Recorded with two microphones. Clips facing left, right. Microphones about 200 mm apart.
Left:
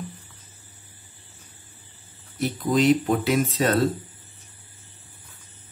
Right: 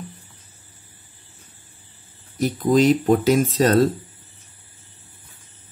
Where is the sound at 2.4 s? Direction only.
40° right (ahead or behind).